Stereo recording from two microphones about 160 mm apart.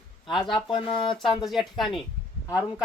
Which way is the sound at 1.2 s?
Centre (ahead or behind).